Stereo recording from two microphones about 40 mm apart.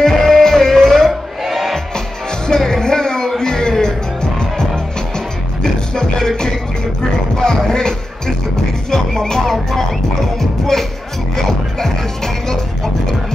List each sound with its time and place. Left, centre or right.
0.0 s music: centre
1.4 s music: centre
2.4 s music: centre